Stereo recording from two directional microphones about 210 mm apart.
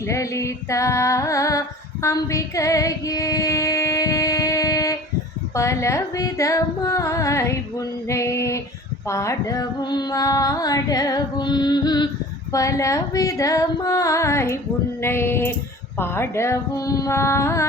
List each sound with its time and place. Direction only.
0.0 s female singing: 15° left (ahead or behind)
5.5 s carnatic music: 15° left (ahead or behind)